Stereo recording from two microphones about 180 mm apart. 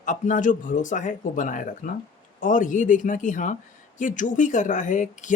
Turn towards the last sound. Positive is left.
turn(degrees=45)  # may be behind; listen again after turning